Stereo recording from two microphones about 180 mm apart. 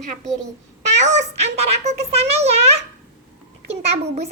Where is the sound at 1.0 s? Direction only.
40° right (ahead or behind).